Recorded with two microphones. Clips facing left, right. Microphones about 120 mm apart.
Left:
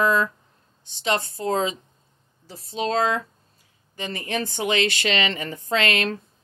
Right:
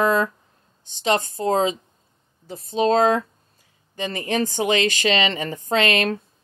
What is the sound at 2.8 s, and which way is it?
Speech, 45° right (ahead or behind).